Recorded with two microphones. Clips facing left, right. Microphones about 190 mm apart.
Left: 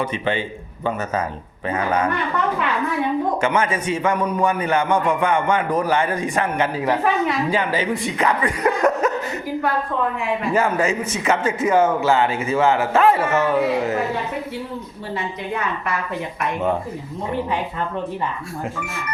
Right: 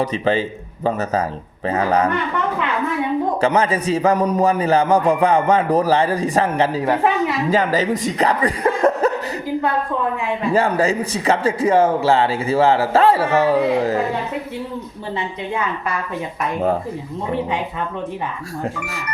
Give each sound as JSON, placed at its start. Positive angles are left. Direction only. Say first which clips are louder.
{"t": 0.0, "sound": "a man's voice", "louder": "right 4 dB", "side_deg": -35}
{"t": 1.6, "sound": "a man's voice", "louder": "right 3 dB", "side_deg": -35}
{"t": 3.4, "sound": "a man's voice", "louder": "right 3 dB", "side_deg": -35}
{"t": 8.8, "sound": "laughter", "louder": "right 3 dB", "side_deg": -35}
{"t": 10.5, "sound": "a man's voice", "louder": "right 3 dB", "side_deg": -35}